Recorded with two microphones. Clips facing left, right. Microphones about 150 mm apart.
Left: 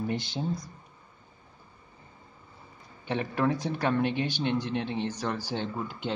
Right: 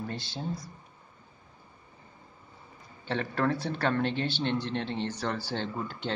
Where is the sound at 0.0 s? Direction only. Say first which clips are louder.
Left 5 dB; 15° left (ahead or behind).